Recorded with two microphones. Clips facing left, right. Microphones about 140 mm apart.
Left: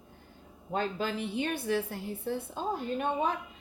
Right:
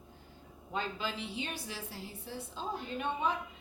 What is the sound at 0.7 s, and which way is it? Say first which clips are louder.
A woman's voice: left 6 dB; 50° left (ahead or behind).